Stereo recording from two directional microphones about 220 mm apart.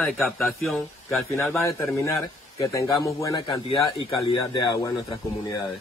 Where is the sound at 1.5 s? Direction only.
15° left (ahead or behind).